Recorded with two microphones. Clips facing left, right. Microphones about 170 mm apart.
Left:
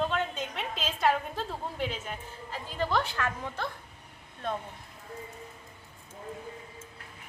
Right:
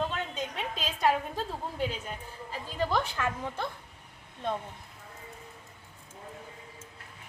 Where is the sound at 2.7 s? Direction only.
15° right (ahead or behind).